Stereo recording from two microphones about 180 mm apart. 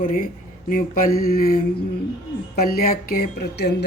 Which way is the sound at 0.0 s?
50° left (ahead or behind).